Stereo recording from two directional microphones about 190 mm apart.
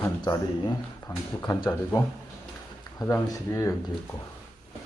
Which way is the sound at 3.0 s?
15° left (ahead or behind).